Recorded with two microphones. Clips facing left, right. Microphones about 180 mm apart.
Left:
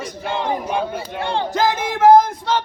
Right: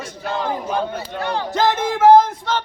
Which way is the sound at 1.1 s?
25° left (ahead or behind).